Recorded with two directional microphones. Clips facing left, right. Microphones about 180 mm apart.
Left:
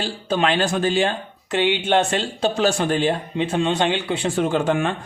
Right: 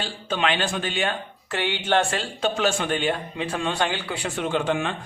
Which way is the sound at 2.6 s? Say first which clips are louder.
Left 5 dB; 35° left (ahead or behind).